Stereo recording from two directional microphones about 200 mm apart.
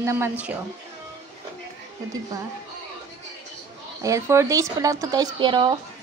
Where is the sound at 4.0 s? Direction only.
15° right (ahead or behind).